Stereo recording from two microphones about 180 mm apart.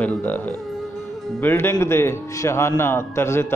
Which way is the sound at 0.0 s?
10° left (ahead or behind).